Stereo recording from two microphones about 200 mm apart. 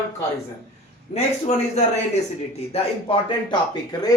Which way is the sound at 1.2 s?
35° left (ahead or behind).